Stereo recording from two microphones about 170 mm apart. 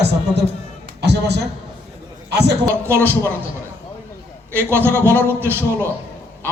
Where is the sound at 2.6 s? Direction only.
15° right (ahead or behind).